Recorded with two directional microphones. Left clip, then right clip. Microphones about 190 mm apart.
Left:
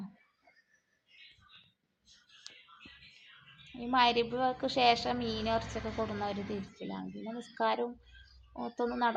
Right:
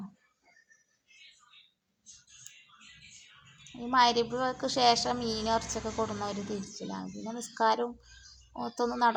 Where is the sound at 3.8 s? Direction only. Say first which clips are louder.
Right 3 dB; 15° right (ahead or behind).